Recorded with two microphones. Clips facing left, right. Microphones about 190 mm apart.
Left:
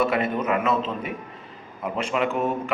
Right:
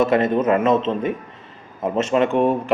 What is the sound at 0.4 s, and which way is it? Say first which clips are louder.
Speech: right 6 dB; 35° right (ahead or behind).